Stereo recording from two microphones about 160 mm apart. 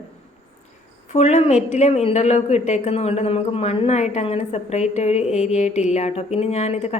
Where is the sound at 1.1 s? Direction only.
45° left (ahead or behind).